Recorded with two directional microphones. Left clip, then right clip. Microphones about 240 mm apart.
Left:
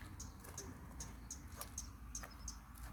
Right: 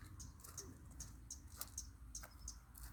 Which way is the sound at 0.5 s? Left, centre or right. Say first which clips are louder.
Left 2 dB; right.